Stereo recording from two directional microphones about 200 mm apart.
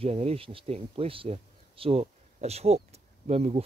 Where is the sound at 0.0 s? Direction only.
30° right (ahead or behind).